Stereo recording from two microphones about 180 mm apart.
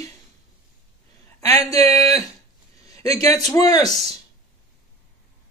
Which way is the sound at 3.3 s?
20° left (ahead or behind).